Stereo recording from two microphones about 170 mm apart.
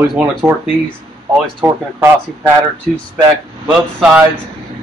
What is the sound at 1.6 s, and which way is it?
Speech, 10° right (ahead or behind).